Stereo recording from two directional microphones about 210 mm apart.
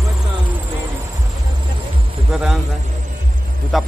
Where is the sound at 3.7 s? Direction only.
Centre (ahead or behind).